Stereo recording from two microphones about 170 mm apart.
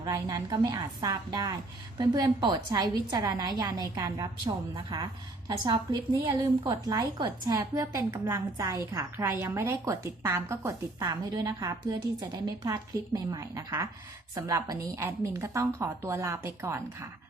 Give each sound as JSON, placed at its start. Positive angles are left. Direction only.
{"t": 0.0, "sound": "a woman's voice", "side_deg": -20}